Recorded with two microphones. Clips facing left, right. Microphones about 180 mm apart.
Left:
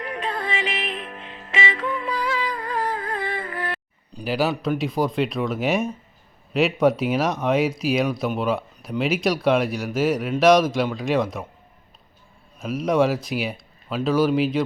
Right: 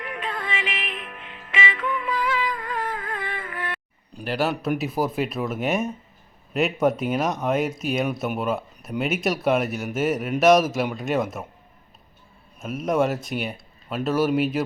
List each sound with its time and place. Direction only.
0.0 s music: 35° left (ahead or behind)
4.2 s speech: centre (ahead or behind)
12.5 s speech: centre (ahead or behind)